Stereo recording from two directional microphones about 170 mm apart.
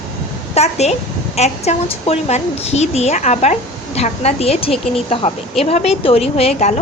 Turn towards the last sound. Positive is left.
turn(degrees=40)  # may be behind; listen again after turning